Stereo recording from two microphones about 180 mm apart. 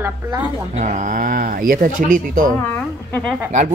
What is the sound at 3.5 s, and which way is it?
Speech, 45° right (ahead or behind).